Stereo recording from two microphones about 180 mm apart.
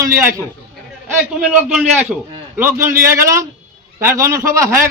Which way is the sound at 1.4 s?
5° right (ahead or behind).